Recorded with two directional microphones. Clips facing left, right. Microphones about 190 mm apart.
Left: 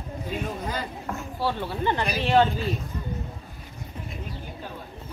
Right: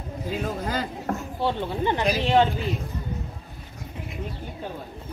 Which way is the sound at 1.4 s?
20° right (ahead or behind).